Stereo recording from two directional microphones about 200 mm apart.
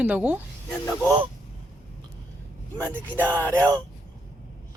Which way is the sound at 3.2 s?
5° left (ahead or behind).